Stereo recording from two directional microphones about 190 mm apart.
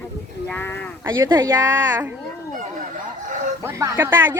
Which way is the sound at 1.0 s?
20° right (ahead or behind).